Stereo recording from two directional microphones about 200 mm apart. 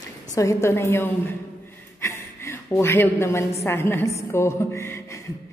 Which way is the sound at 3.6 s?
10° left (ahead or behind).